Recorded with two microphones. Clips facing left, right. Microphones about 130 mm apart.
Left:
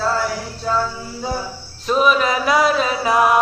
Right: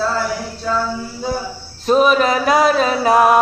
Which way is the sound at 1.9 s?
45° right (ahead or behind).